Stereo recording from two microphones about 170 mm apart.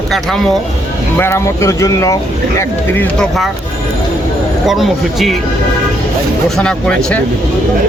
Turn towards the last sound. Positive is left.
turn(degrees=5)  # may be behind; listen again after turning